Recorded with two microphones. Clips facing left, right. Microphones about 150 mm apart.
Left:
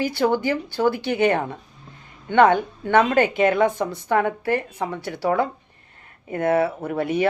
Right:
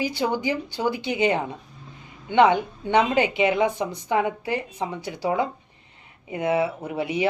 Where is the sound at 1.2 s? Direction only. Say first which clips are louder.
Left 3 dB; 55° left (ahead or behind).